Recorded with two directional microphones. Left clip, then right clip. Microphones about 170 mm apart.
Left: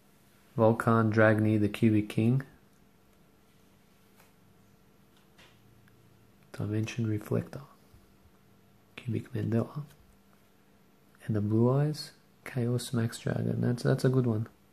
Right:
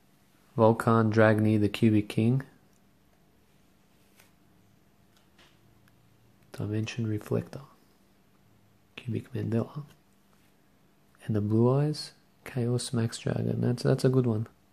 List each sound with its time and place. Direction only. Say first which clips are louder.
0.6 s speech: right 2 dB; 20° right (ahead or behind)
6.5 s speech: right 1 dB; 15° right (ahead or behind)
8.9 s speech: right 1 dB; 15° right (ahead or behind)
11.1 s speech: right 2 dB; 20° right (ahead or behind)